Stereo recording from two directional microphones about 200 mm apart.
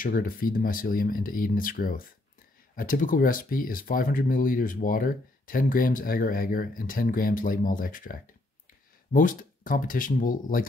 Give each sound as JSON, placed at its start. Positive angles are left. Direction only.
{"t": 0.0, "sound": "speech", "side_deg": 45}